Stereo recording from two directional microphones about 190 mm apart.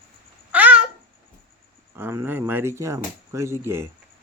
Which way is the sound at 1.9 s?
10° right (ahead or behind).